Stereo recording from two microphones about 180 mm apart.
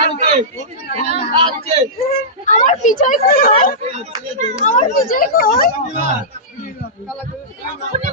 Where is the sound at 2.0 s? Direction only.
40° left (ahead or behind).